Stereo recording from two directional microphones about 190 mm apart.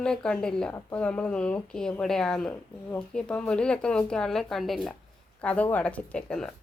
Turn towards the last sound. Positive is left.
turn(degrees=5)  # may be behind; listen again after turning